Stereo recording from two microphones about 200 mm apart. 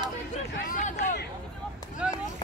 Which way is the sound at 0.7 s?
35° left (ahead or behind).